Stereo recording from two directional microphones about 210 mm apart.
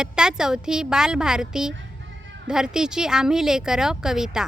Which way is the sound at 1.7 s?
60° right (ahead or behind).